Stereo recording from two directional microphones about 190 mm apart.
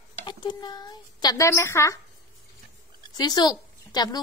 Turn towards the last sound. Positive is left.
turn(degrees=20)  # may be behind; listen again after turning